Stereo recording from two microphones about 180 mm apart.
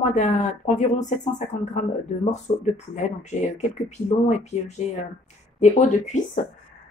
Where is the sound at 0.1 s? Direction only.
45° left (ahead or behind).